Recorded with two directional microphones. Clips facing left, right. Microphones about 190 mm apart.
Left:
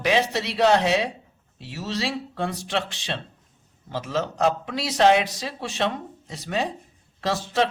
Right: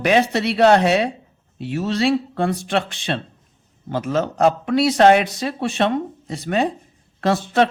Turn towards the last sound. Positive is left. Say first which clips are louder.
# right 6 dB
turn(degrees=-55)  # may be behind; listen again after turning